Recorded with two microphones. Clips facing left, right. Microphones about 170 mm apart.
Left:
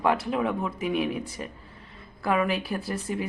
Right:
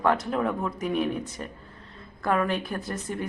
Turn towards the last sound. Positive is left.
turn(degrees=5)  # may be behind; listen again after turning